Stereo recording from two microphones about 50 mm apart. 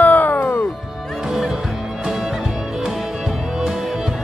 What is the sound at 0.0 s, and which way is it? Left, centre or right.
Music, left.